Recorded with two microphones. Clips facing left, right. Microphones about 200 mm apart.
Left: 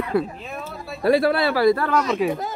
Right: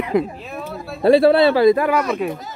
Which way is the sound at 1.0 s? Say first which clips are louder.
Right 6 dB; 25° right (ahead or behind).